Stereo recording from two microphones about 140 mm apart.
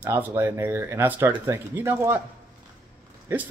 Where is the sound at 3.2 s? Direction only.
15° right (ahead or behind).